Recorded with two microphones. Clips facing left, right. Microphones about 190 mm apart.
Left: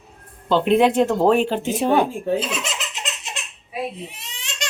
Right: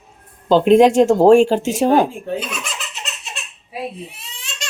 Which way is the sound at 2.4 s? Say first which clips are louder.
Left 2 dB; 25° left (ahead or behind).